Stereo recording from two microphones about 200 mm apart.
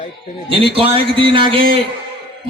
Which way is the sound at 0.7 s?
25° right (ahead or behind).